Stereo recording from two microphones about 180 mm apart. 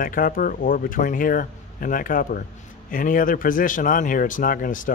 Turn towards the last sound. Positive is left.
turn(degrees=50)  # may be behind; listen again after turning